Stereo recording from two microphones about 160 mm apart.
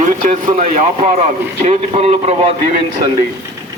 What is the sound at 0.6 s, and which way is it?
A man's voice, 55° right (ahead or behind).